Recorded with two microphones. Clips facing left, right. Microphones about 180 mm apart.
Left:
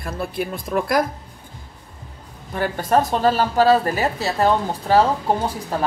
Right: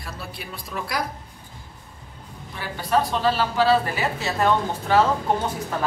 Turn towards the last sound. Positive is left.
turn(degrees=35)  # may be behind; listen again after turning